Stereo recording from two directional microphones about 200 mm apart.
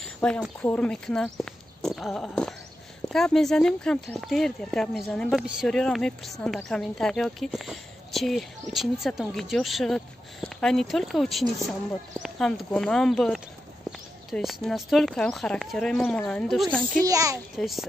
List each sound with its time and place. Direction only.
0.2 s speech: 5° left (ahead or behind)
17.0 s a child's voice: 15° right (ahead or behind)
17.6 s speech: centre (ahead or behind)